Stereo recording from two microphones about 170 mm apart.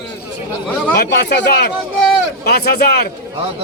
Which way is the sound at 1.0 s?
85° left.